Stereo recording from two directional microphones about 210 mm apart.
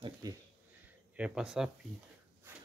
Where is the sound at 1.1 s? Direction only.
5° right (ahead or behind).